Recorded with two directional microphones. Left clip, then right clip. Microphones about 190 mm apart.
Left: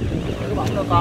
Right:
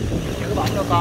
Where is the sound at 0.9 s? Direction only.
Centre (ahead or behind).